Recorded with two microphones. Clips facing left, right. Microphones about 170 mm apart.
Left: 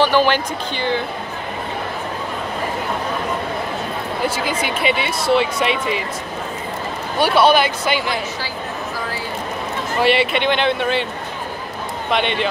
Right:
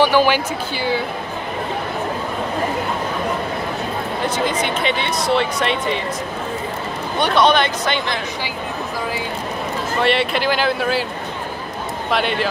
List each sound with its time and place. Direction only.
0.0 s speech: 10° right (ahead or behind)
4.5 s speech: 5° left (ahead or behind)
7.2 s speech: 5° left (ahead or behind)
9.9 s speech: centre (ahead or behind)
12.1 s speech: centre (ahead or behind)